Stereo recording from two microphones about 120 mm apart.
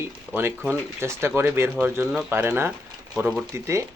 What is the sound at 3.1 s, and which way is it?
Speech, 5° right (ahead or behind).